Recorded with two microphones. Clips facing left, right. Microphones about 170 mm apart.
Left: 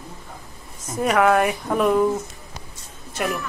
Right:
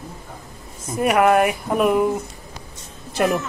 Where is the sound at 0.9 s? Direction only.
5° right (ahead or behind).